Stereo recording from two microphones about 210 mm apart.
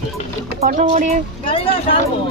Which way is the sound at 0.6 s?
35° right (ahead or behind).